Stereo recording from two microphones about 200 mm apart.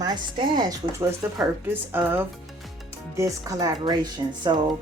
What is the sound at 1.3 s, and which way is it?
A woman's voice, 10° right (ahead or behind).